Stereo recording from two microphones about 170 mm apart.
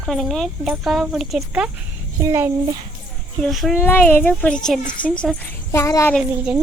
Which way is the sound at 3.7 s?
10° left (ahead or behind).